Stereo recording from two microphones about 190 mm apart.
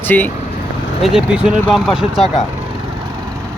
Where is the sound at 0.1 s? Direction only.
10° left (ahead or behind).